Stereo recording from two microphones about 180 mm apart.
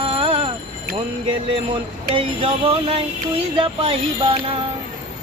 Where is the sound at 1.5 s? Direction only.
30° right (ahead or behind).